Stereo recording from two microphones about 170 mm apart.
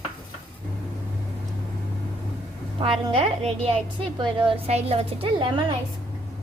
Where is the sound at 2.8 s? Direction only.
30° right (ahead or behind).